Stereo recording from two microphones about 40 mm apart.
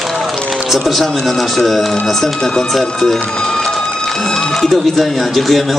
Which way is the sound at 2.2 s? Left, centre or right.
Left.